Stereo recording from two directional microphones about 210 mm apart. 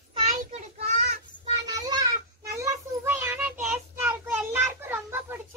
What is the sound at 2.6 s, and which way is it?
Child singing, 10° right (ahead or behind).